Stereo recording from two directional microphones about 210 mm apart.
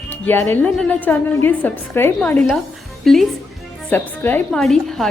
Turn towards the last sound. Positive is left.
turn(degrees=0)  # may be behind; listen again after turning